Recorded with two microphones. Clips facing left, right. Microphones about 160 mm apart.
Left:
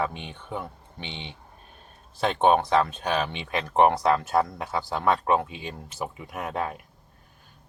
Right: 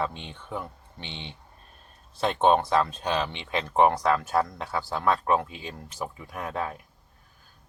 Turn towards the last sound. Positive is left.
turn(degrees=15)  # may be behind; listen again after turning